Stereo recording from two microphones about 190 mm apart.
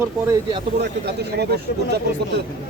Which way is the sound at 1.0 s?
60° right (ahead or behind).